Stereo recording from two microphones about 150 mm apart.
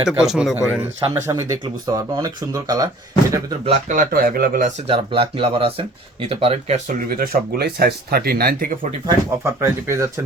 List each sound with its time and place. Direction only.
0.0 s speech: 5° right (ahead or behind)
1.3 s speech: 20° right (ahead or behind)
3.7 s speech: 55° right (ahead or behind)
4.1 s speech: 80° right
4.9 s speech: 35° right (ahead or behind); by 8.9 s 70° right (ahead or behind)
9.4 s speech: 15° right (ahead or behind)